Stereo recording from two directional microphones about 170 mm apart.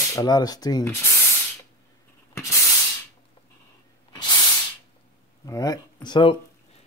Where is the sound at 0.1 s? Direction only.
20° left (ahead or behind).